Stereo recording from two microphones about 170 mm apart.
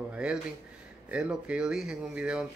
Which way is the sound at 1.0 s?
5° right (ahead or behind).